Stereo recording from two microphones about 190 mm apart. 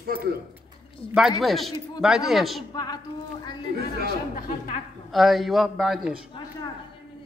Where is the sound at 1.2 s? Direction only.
Centre (ahead or behind).